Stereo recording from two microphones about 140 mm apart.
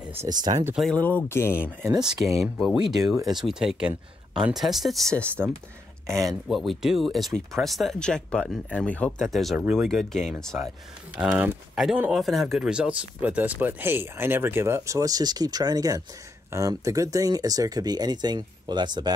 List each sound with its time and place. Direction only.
0.0 s a sound: 15° right (ahead or behind)
0.3 s speech: 30° right (ahead or behind)
0.7 s speech: 5° left (ahead or behind)
2.0 s speech: 5° right (ahead or behind)
6.0 s speech: 20° right (ahead or behind)
6.5 s speech: centre (ahead or behind)
11.1 s speech: 10° right (ahead or behind); by 19.1 s 30° right (ahead or behind)